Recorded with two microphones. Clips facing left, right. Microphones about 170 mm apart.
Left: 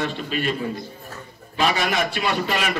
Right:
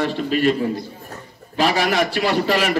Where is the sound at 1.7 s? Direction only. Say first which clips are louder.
Right 4 dB; 75° right (ahead or behind).